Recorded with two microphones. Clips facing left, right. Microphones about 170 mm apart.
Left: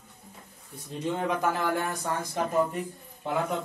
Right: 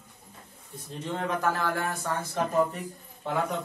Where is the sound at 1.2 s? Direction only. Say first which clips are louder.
Right 1 dB; 15° left (ahead or behind).